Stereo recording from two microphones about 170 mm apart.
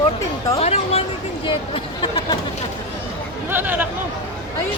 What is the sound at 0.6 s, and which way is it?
Speech, 35° left (ahead or behind).